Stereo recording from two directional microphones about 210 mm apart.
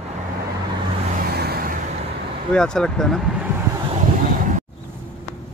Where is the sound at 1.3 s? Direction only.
50° right (ahead or behind).